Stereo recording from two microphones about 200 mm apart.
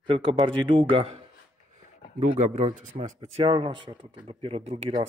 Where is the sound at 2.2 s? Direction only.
35° right (ahead or behind).